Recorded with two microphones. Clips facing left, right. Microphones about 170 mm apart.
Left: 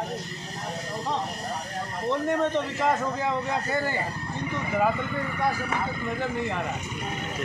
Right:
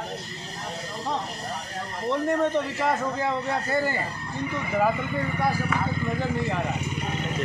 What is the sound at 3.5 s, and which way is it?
Speech, 15° left (ahead or behind).